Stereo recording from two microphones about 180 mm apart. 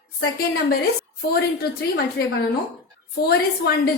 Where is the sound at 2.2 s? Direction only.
60° left (ahead or behind).